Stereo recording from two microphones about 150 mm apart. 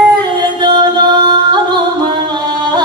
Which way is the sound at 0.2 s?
30° right (ahead or behind).